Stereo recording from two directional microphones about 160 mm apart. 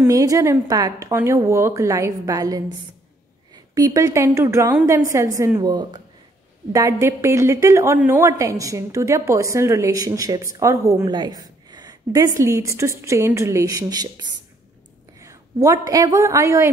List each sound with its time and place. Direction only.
0.0 s a woman's voice: 20° right (ahead or behind)
3.7 s a woman's voice: 20° right (ahead or behind)
15.1 s whispering: 20° right (ahead or behind)
15.9 s a woman's voice: 20° right (ahead or behind)